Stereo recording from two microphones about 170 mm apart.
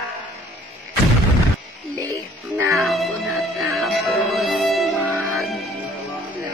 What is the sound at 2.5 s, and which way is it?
Music, 15° right (ahead or behind).